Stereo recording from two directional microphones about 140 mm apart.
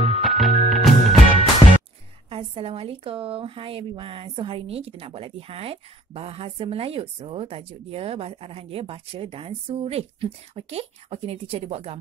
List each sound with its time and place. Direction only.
0.0 s music: centre (ahead or behind)
2.2 s speech: 40° right (ahead or behind)